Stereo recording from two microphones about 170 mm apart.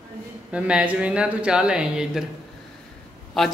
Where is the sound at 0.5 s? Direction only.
5° right (ahead or behind).